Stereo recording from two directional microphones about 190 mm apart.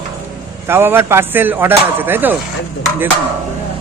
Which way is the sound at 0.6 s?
10° right (ahead or behind).